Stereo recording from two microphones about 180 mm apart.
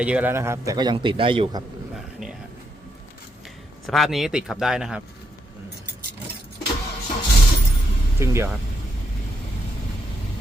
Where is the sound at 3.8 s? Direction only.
Centre (ahead or behind).